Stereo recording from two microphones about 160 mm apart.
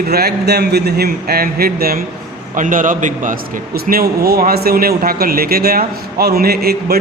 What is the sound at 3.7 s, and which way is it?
A man's voice, 70° right (ahead or behind).